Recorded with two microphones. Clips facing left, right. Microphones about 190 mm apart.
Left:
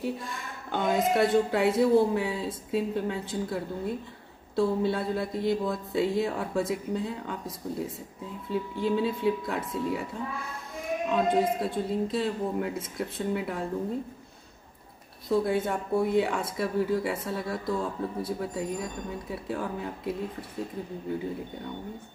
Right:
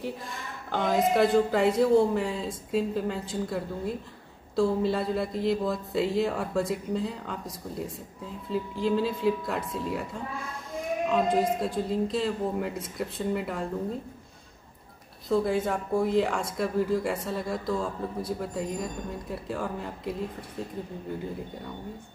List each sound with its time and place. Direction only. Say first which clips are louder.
0.7 s speech: right 1 dB; centre (ahead or behind)
11.1 s speech: even; centre (ahead or behind)
15.2 s speech: even; centre (ahead or behind)